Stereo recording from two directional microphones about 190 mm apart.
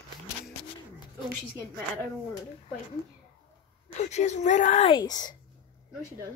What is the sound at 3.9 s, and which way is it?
Speech, 35° left (ahead or behind).